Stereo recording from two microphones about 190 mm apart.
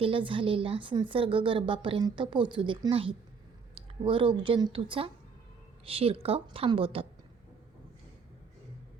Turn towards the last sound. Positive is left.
turn(degrees=-30)  # may be behind; listen again after turning